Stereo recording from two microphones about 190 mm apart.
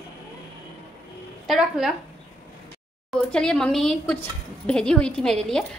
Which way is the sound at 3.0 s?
5° left (ahead or behind).